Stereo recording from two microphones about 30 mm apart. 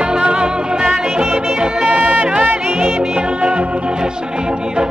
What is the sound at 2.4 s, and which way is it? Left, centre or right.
Music, right.